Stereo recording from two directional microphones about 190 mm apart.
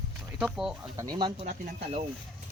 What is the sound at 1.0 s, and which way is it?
Speech, 25° right (ahead or behind).